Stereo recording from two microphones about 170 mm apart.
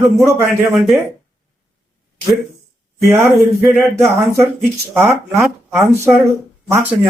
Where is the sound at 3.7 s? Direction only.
15° right (ahead or behind).